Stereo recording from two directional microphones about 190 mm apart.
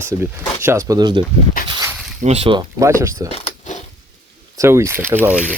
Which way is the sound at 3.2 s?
35° left (ahead or behind).